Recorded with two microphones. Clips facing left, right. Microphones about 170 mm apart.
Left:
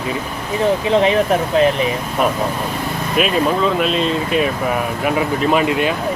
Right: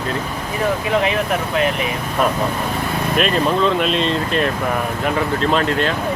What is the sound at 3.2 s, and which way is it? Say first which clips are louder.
Speech: left 1 dB; 5° left (ahead or behind).